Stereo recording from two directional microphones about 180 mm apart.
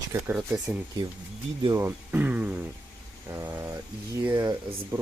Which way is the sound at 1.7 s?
10° right (ahead or behind).